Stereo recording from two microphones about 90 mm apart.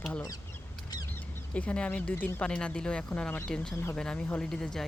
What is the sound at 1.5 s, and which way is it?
Speech, 15° left (ahead or behind).